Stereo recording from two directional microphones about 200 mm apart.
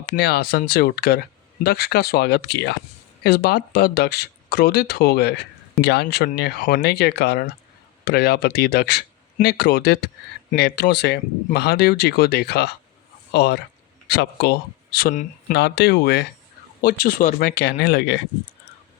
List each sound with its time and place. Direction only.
0.0 s speech: 50° left (ahead or behind)
15.5 s speech: 55° left (ahead or behind)
16.8 s speech: 45° left (ahead or behind)